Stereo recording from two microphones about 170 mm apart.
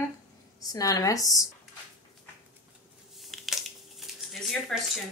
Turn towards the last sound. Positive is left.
turn(degrees=0)  # may be behind; listen again after turning